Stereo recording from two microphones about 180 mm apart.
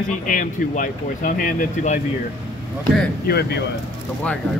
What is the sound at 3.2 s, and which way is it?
Speech, 60° left (ahead or behind).